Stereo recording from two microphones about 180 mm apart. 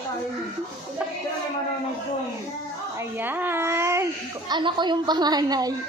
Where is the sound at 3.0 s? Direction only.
10° right (ahead or behind).